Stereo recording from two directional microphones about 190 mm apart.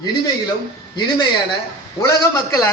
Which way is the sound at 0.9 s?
25° left (ahead or behind).